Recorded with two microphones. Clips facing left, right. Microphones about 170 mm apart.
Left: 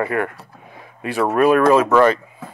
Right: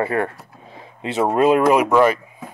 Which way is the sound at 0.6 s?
25° right (ahead or behind).